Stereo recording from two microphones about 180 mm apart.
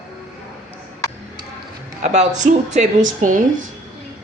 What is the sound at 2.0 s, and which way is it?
A woman's voice, 40° right (ahead or behind).